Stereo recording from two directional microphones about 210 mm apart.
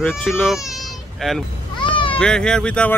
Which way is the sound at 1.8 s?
25° left (ahead or behind).